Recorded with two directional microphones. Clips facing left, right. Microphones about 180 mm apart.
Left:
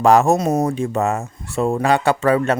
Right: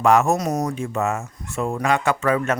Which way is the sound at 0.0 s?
35° left (ahead or behind).